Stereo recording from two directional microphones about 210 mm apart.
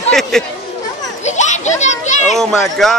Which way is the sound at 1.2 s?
35° left (ahead or behind).